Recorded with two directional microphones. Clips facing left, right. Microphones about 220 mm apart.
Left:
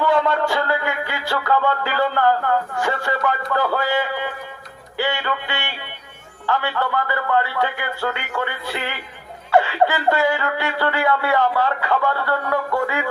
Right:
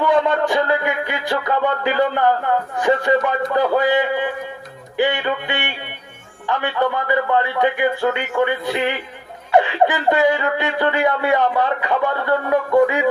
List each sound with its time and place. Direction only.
0.0 s music: 20° right (ahead or behind)
2.7 s speech: 20° right (ahead or behind)